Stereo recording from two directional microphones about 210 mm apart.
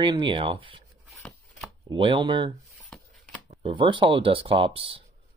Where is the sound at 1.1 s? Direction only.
5° left (ahead or behind).